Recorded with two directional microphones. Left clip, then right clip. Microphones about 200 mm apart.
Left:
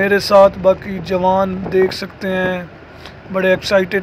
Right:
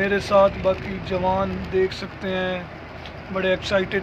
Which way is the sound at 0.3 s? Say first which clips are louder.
Left 8 dB; 35° left (ahead or behind).